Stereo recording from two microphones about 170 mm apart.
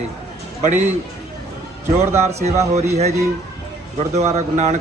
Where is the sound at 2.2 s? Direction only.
40° right (ahead or behind).